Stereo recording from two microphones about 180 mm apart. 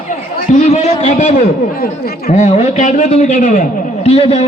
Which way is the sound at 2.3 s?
40° left (ahead or behind).